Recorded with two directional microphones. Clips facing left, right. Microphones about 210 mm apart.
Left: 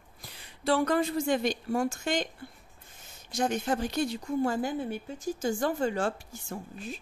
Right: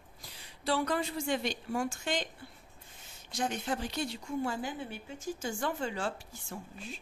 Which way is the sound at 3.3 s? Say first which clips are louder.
Left 5 dB; 45° left (ahead or behind).